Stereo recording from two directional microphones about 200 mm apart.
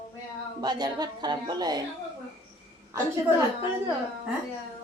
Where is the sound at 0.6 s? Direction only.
20° right (ahead or behind).